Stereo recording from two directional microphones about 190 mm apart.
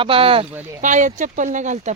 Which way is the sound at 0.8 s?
40° right (ahead or behind).